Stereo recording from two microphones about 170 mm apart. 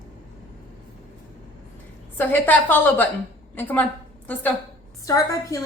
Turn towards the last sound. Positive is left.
turn(degrees=20)  # may be behind; listen again after turning